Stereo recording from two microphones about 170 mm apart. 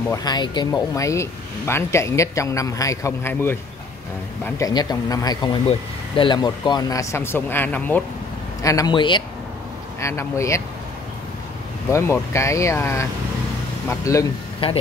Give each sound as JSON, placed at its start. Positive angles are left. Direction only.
{"t": 0.1, "sound": "speech", "side_deg": 25}
{"t": 4.6, "sound": "speech", "side_deg": 20}
{"t": 8.6, "sound": "speech", "side_deg": 20}
{"t": 9.9, "sound": "speech", "side_deg": 15}
{"t": 11.9, "sound": "speech", "side_deg": 15}
{"t": 14.6, "sound": "speech", "side_deg": 35}